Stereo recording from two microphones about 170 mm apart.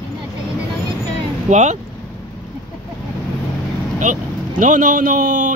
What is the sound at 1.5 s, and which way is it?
Speech, 45° right (ahead or behind).